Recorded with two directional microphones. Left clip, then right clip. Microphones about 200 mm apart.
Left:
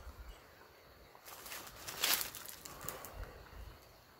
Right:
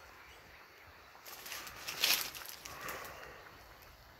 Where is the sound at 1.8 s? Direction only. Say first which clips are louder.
Right 3 dB; 10° right (ahead or behind).